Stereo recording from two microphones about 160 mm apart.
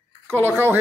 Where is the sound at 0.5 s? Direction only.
15° right (ahead or behind).